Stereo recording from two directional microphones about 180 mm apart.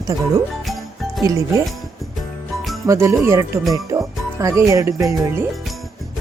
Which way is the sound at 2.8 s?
15° right (ahead or behind).